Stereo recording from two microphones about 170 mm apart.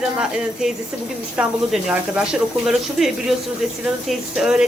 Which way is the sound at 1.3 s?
5° right (ahead or behind).